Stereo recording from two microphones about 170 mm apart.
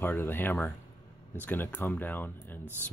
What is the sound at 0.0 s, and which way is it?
Speech, 10° left (ahead or behind).